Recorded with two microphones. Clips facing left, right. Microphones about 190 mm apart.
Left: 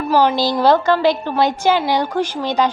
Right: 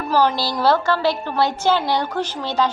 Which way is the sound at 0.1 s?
15° left (ahead or behind).